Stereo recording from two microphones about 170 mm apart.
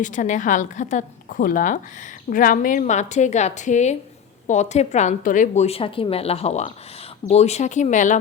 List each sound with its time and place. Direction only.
0.0 s a woman's voice: 45° left (ahead or behind)